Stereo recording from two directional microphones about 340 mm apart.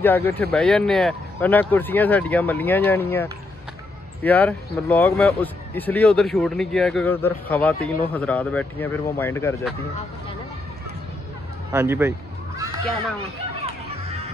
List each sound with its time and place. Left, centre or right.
0.0 s speech: centre
11.7 s speech: centre
14.0 s music: centre